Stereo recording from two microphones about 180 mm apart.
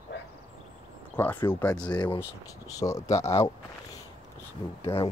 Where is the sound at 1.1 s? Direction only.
10° left (ahead or behind).